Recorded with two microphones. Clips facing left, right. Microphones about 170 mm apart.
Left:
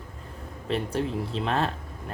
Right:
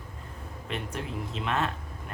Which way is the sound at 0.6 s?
35° left (ahead or behind).